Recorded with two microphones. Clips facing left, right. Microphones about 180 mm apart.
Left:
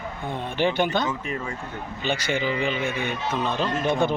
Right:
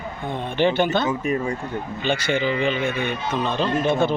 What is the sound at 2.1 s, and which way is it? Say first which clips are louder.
Speech: right 3 dB; 10° left (ahead or behind).